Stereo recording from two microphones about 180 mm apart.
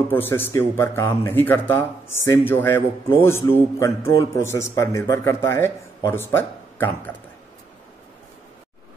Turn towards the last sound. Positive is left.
turn(degrees=10)  # may be behind; listen again after turning